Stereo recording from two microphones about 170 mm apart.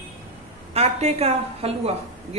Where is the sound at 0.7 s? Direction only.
40° right (ahead or behind).